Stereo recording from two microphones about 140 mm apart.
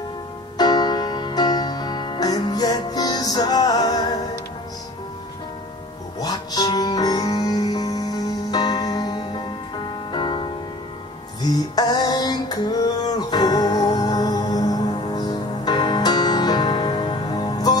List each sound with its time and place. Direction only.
0.6 s music: 30° left (ahead or behind)
6.1 s music: 30° left (ahead or behind)